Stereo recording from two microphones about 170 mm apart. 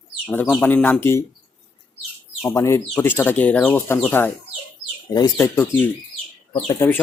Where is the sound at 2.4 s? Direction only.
15° left (ahead or behind).